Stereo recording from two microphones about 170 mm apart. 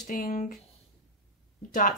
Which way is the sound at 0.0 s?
50° left (ahead or behind).